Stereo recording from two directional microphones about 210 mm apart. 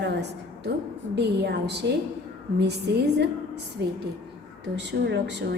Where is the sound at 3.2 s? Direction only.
50° right (ahead or behind).